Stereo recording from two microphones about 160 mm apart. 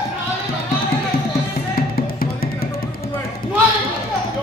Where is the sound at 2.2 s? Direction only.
70° left (ahead or behind).